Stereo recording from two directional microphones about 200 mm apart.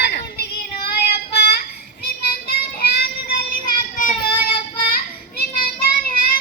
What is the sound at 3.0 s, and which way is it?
Child singing, 45° left (ahead or behind).